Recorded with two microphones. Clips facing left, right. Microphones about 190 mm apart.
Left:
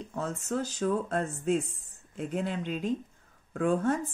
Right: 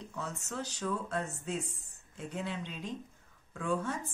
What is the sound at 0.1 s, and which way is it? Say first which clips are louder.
Speech: left 9 dB; 50° left (ahead or behind).